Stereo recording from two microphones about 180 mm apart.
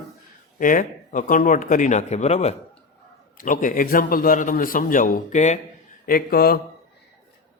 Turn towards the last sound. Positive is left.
turn(degrees=55)  # may be behind; listen again after turning